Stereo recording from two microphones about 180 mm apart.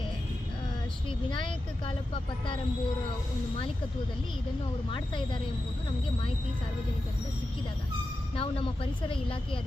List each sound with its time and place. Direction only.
1.3 s speech: 30° left (ahead or behind)
4.9 s speech: 25° left (ahead or behind)
8.4 s speech: 30° left (ahead or behind)